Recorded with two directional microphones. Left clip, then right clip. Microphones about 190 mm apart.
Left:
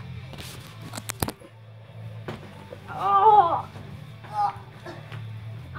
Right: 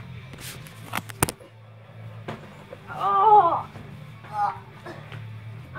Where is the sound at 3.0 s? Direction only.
25° left (ahead or behind).